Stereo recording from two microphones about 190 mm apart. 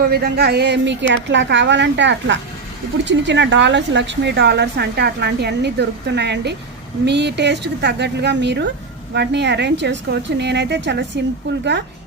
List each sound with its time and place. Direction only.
0.1 s a woman's voice: 55° right (ahead or behind)